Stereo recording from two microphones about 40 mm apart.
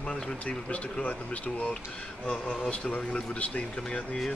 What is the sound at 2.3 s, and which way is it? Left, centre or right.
Speech, left.